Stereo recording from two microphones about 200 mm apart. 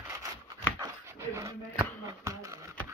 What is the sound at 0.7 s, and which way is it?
Dog, 15° right (ahead or behind).